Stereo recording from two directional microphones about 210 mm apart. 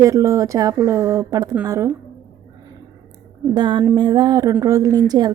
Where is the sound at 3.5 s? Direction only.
20° right (ahead or behind).